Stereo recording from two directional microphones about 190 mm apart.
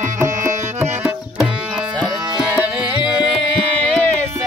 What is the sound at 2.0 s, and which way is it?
Music, 5° right (ahead or behind).